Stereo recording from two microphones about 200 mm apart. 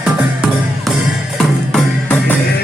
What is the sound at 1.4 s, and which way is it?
Music, 5° left (ahead or behind).